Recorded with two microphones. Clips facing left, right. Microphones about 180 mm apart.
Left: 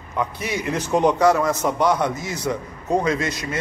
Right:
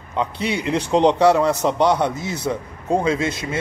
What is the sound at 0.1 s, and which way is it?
A man's voice, 25° right (ahead or behind).